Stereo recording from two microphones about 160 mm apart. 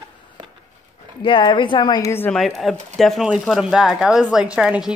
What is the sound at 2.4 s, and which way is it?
Speech, centre (ahead or behind).